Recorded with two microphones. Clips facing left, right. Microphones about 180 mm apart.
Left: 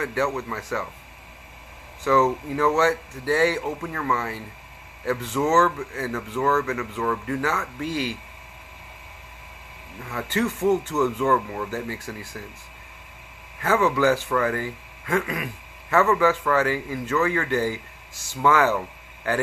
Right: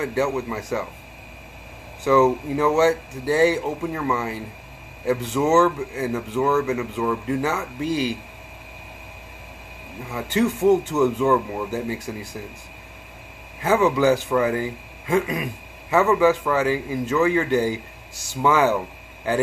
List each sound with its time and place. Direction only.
0.0 s a man's voice: 15° right (ahead or behind)
2.0 s a man's voice: 15° right (ahead or behind)
10.1 s a man's voice: 15° right (ahead or behind)
13.6 s a man's voice: 15° right (ahead or behind)